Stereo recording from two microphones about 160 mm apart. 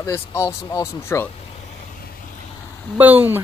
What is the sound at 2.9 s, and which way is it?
Speech, 10° right (ahead or behind).